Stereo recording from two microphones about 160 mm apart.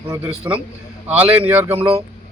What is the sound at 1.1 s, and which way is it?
Speech, 10° right (ahead or behind).